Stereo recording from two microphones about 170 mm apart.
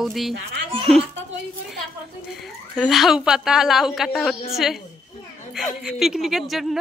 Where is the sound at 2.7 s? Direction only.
Centre (ahead or behind).